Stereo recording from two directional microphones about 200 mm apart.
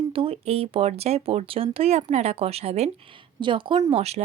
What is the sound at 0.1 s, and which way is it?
Speech, 30° right (ahead or behind).